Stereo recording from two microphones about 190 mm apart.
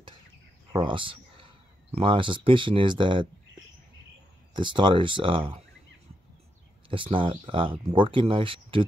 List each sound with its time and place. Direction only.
0.7 s speech: 25° right (ahead or behind)
4.6 s speech: 25° right (ahead or behind)
6.9 s speech: 25° right (ahead or behind)